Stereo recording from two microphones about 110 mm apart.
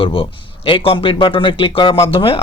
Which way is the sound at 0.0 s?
55° left (ahead or behind).